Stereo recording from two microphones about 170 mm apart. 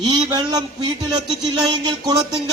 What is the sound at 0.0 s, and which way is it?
Speech, 25° right (ahead or behind).